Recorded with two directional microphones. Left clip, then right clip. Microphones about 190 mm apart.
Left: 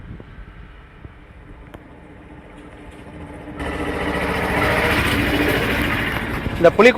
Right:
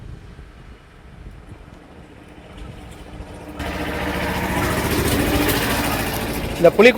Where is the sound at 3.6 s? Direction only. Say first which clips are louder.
Left 1 dB; 35° left (ahead or behind).